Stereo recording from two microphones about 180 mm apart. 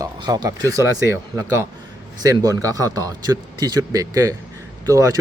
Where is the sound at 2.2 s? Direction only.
20° right (ahead or behind).